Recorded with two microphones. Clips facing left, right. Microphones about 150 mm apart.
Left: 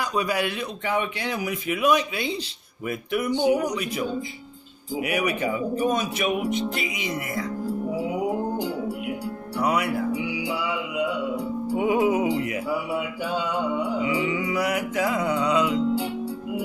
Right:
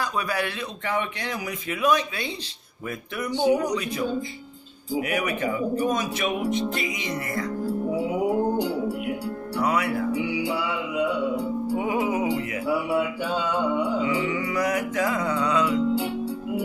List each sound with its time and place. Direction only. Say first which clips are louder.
0.3 s speech: left 2 dB; 10° left (ahead or behind)
5.0 s speech: left 3 dB; 10° left (ahead or behind)
9.6 s speech: left 1 dB; 15° left (ahead or behind)
11.7 s speech: left 5 dB; 15° left (ahead or behind)
13.8 s speech: even; 15° left (ahead or behind)